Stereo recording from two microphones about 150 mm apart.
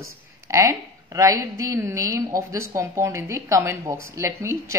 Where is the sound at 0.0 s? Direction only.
20° right (ahead or behind).